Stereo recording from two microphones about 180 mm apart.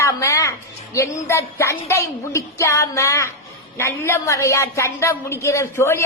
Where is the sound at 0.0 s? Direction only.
15° left (ahead or behind).